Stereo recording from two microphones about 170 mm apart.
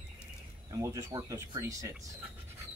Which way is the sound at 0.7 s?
15° right (ahead or behind).